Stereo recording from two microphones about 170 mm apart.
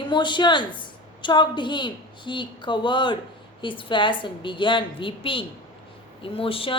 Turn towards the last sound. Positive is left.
turn(degrees=30)  # may be behind; listen again after turning